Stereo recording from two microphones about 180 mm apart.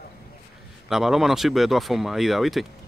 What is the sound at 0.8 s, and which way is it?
Speech, centre (ahead or behind).